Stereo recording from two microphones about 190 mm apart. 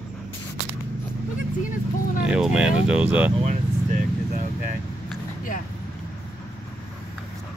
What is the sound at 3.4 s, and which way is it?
Vehicle, 40° right (ahead or behind).